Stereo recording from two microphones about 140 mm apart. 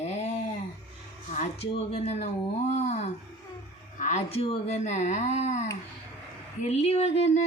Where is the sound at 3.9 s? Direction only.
55° left (ahead or behind).